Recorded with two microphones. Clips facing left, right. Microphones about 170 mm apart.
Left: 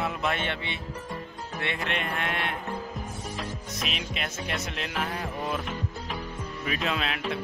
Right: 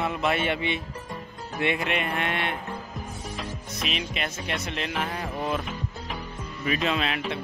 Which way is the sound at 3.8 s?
Centre (ahead or behind).